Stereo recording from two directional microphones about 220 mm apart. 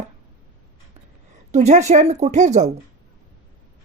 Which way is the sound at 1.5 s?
30° right (ahead or behind).